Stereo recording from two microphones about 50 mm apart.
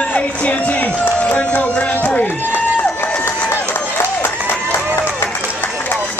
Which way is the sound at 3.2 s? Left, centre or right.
Left.